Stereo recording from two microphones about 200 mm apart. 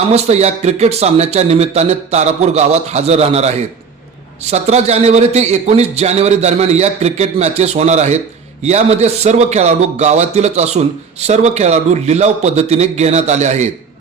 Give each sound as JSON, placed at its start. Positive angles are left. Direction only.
{"t": 0.1, "sound": "a man's voice", "side_deg": -35}